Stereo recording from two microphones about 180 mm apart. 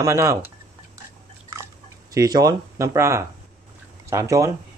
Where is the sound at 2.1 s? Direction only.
20° right (ahead or behind).